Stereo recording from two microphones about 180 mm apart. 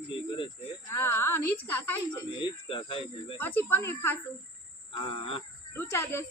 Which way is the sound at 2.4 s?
30° left (ahead or behind).